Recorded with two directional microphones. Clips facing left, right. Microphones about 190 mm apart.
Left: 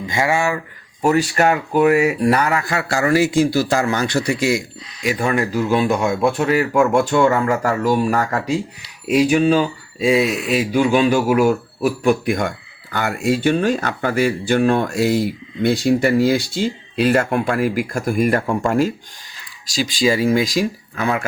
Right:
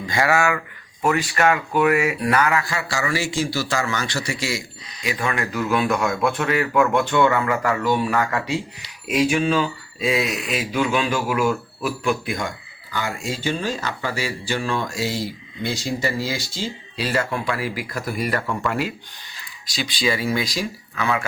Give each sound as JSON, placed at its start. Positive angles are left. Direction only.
{"t": 0.0, "sound": "speech", "side_deg": 25}
{"t": 1.0, "sound": "speech", "side_deg": 40}
{"t": 2.6, "sound": "speech", "side_deg": 55}
{"t": 5.0, "sound": "speech", "side_deg": 45}
{"t": 12.3, "sound": "speech", "side_deg": 55}